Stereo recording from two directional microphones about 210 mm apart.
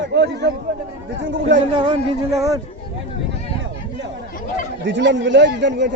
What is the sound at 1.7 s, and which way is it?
Speech, 25° right (ahead or behind).